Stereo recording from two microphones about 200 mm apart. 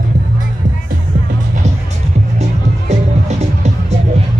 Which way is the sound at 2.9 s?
35° right (ahead or behind).